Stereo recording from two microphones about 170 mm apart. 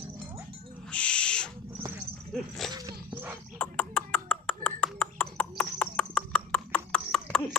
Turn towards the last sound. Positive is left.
turn(degrees=5)  # may be behind; listen again after turning